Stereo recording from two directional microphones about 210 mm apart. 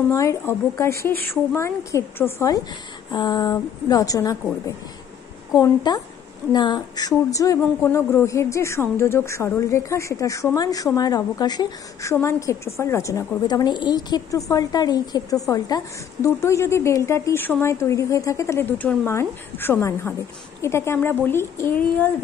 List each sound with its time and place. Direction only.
0.1 s speech: 15° left (ahead or behind)
5.9 s a woman's voice: 20° left (ahead or behind)